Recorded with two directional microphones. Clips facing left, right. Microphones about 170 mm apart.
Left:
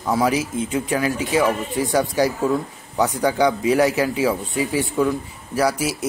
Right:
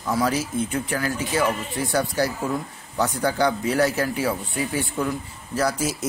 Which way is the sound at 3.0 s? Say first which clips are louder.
Left 4 dB; 15° left (ahead or behind).